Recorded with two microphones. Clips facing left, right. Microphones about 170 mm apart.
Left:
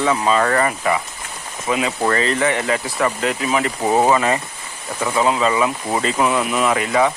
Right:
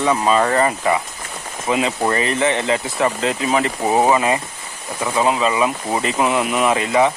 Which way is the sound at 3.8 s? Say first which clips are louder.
Even; 15° right (ahead or behind).